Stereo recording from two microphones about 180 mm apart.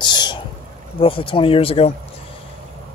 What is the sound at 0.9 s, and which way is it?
Speech, 30° left (ahead or behind).